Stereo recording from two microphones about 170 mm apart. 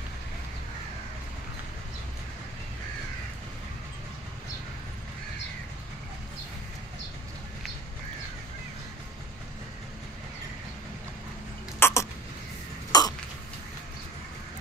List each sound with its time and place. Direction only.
11.8 s throat clearing: 15° left (ahead or behind)